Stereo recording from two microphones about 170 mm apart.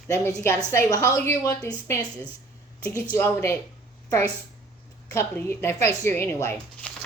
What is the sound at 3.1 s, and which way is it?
Speech, 15° left (ahead or behind).